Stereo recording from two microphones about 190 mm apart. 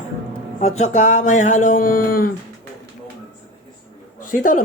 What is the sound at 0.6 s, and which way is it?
Speech, 40° left (ahead or behind).